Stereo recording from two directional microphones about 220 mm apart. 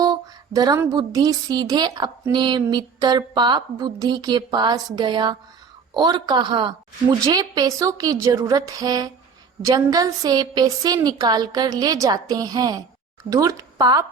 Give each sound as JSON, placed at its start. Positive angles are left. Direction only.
{"t": 0.5, "sound": "a woman's voice", "side_deg": -15}